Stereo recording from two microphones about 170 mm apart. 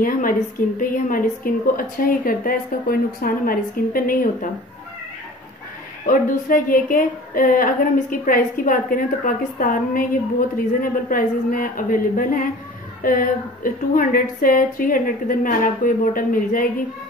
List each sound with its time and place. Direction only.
0.0 s a sound: 55° left (ahead or behind)
0.7 s a woman's voice: 55° left (ahead or behind)
6.0 s a woman's voice: 55° left (ahead or behind)